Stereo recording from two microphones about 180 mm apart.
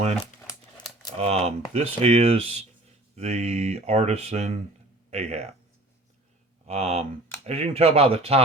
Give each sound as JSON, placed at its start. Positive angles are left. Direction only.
{"t": 1.2, "sound": "speech", "side_deg": -35}
{"t": 6.7, "sound": "speech", "side_deg": -35}